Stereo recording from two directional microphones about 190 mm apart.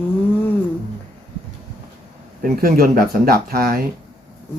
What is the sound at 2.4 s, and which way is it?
Speech, 50° right (ahead or behind).